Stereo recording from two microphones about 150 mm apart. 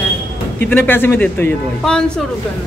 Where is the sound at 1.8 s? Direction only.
5° left (ahead or behind).